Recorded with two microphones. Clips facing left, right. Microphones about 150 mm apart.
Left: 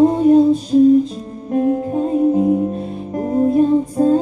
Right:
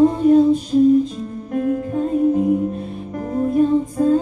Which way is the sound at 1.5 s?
30° left (ahead or behind).